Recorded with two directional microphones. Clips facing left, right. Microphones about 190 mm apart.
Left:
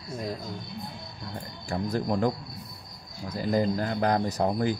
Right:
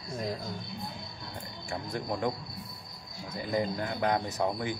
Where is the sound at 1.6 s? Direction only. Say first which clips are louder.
Left 7 dB; 40° left (ahead or behind).